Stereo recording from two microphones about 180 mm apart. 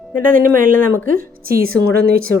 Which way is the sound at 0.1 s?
50° right (ahead or behind).